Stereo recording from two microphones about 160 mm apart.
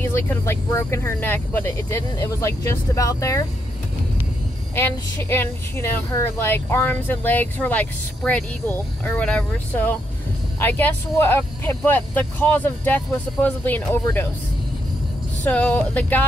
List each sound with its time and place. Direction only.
0.0 s speech: 15° left (ahead or behind)
4.7 s speech: 15° left (ahead or behind)
15.4 s speech: 10° left (ahead or behind)